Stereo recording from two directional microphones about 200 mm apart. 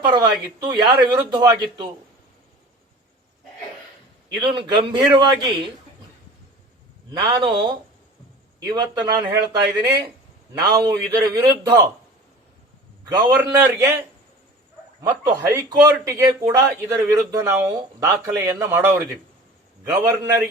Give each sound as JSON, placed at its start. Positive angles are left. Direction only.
{"t": 0.0, "sound": "speech", "side_deg": -20}
{"t": 4.4, "sound": "speech", "side_deg": -25}
{"t": 7.1, "sound": "speech", "side_deg": -25}
{"t": 10.6, "sound": "speech", "side_deg": -20}
{"t": 13.1, "sound": "a man's voice", "side_deg": -20}
{"t": 15.0, "sound": "a man's voice", "side_deg": -15}